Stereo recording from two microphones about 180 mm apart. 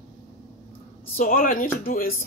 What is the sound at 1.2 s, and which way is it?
Speech, 50° left (ahead or behind).